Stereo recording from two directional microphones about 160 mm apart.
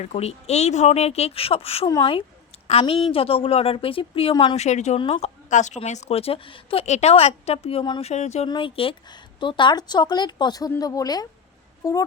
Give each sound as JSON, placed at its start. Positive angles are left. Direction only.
{"t": 0.0, "sound": "a woman's voice", "side_deg": 40}
{"t": 5.5, "sound": "a woman's voice", "side_deg": 50}
{"t": 8.1, "sound": "speech", "side_deg": 45}
{"t": 8.4, "sound": "a woman's voice", "side_deg": 30}